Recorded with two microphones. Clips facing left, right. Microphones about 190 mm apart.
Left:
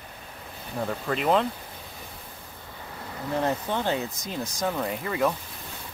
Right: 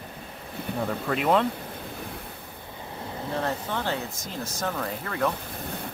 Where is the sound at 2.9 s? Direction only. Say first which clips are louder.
Right 1 dB; 25° right (ahead or behind).